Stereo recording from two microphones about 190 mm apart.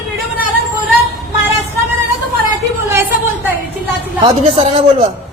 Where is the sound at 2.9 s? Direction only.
10° right (ahead or behind).